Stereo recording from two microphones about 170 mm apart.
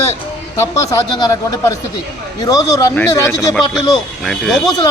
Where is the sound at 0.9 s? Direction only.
20° left (ahead or behind).